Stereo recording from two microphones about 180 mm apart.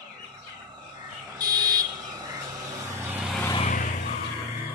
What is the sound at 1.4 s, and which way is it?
Buzzer, 20° right (ahead or behind).